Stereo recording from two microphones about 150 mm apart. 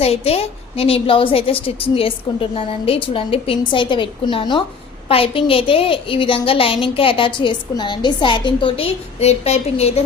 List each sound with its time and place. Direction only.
0.0 s a woman's voice: 40° left (ahead or behind)